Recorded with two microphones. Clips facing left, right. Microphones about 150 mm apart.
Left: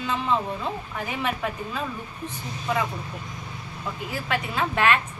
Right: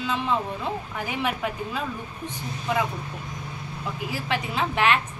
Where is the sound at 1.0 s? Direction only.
15° right (ahead or behind).